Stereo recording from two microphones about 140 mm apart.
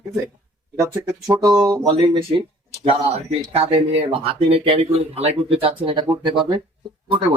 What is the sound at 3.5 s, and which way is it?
Speech, 45° right (ahead or behind).